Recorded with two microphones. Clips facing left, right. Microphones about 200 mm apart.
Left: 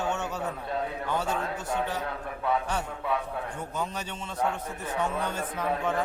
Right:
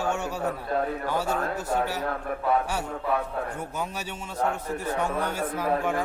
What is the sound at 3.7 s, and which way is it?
A man's voice, 10° right (ahead or behind).